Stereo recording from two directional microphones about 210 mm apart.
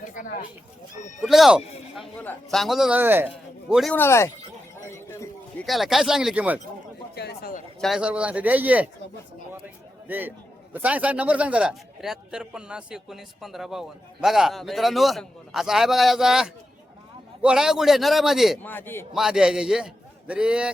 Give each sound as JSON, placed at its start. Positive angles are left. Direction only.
{"t": 1.2, "sound": "a man's voice", "side_deg": 0}
{"t": 3.9, "sound": "a man's voice", "side_deg": 10}
{"t": 4.9, "sound": "a sound", "side_deg": 10}
{"t": 5.6, "sound": "a man's voice", "side_deg": 0}
{"t": 7.2, "sound": "speech", "side_deg": 50}
{"t": 7.8, "sound": "a man's voice", "side_deg": 0}
{"t": 18.7, "sound": "a man's voice", "side_deg": 10}
{"t": 19.1, "sound": "a man's voice", "side_deg": 0}